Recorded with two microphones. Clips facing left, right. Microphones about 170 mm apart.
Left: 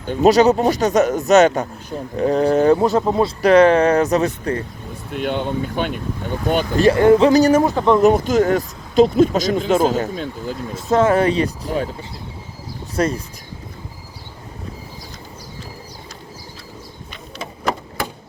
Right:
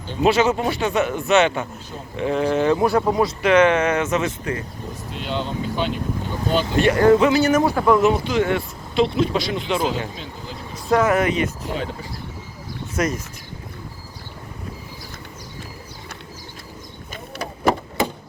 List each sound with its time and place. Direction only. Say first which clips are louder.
0.0 s speech: left 5 dB; 45° left (ahead or behind)
2.7 s speech: left 2 dB; 25° left (ahead or behind)
5.1 s speech: left 5 dB; 55° left (ahead or behind)
6.7 s speech: left 4 dB; 35° left (ahead or behind)
7.0 s speech: left 2 dB; 25° left (ahead or behind)
7.3 s speech: left 4 dB; 40° left (ahead or behind)
7.6 s speech: left 2 dB; 20° left (ahead or behind)
8.0 s speech: left 4 dB; 45° left (ahead or behind)
10.8 s speech: left 3 dB; 25° left (ahead or behind)
12.9 s speech: left 3 dB; 30° left (ahead or behind)